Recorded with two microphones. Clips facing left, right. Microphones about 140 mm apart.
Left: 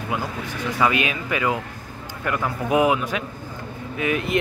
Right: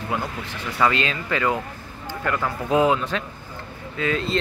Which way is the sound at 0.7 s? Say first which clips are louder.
Even; 15° left (ahead or behind).